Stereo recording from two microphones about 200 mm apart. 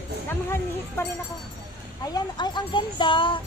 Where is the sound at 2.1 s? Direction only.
20° left (ahead or behind).